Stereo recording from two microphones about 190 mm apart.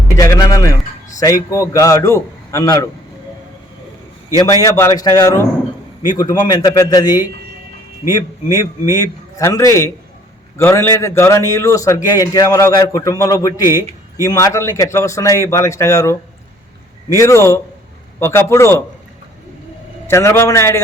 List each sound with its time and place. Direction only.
0.2 s a man's voice: 20° left (ahead or behind)
4.6 s a man's voice: 20° left (ahead or behind)
20.1 s a man's voice: 15° left (ahead or behind)